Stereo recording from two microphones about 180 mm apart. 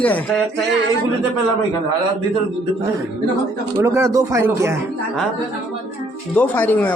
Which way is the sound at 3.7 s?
15° right (ahead or behind).